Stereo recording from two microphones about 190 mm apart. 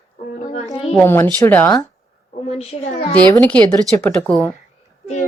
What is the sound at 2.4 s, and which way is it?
Speech, 35° left (ahead or behind).